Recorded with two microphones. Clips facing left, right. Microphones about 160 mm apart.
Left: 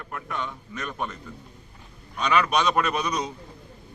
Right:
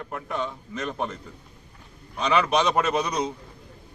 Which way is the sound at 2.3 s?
25° right (ahead or behind).